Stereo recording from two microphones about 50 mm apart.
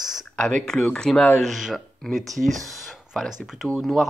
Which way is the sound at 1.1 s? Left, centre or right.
Centre.